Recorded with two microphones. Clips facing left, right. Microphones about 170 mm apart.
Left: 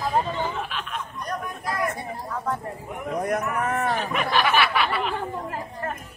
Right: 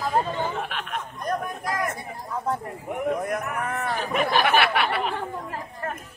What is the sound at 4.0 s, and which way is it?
Speech, 40° right (ahead or behind).